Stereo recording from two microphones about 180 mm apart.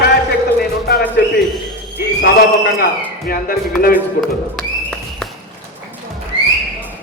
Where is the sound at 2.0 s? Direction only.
60° left (ahead or behind).